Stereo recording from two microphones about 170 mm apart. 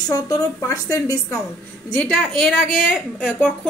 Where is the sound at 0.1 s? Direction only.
20° left (ahead or behind).